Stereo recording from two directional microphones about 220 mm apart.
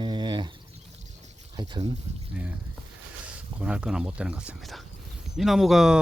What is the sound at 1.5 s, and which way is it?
Speech, 20° right (ahead or behind).